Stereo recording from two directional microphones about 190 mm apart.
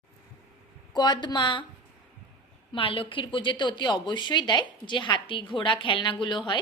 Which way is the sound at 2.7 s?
30° left (ahead or behind).